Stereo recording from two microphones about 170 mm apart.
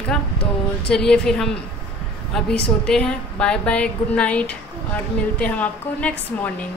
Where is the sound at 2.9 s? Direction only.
5° left (ahead or behind).